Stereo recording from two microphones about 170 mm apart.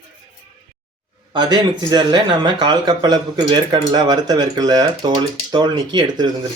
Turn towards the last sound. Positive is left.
turn(degrees=-25)  # may be behind; listen again after turning